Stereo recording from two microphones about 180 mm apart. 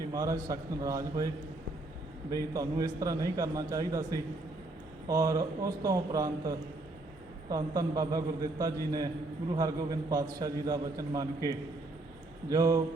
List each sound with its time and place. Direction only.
0.1 s a man's voice: 20° right (ahead or behind)
2.3 s a man's voice: 20° right (ahead or behind)